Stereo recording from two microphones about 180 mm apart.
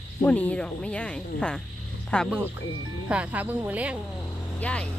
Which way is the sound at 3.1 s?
10° right (ahead or behind).